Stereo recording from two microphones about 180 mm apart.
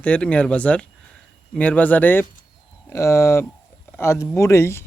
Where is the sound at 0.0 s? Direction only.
5° left (ahead or behind).